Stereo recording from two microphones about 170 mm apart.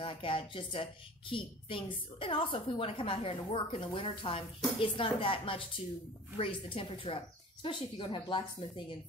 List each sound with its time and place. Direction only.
0.0 s a woman's voice: 30° left (ahead or behind)